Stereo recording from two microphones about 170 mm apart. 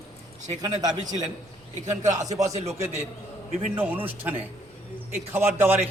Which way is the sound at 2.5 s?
40° right (ahead or behind).